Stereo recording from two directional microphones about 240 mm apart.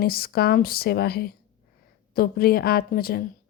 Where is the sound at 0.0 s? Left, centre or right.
Left.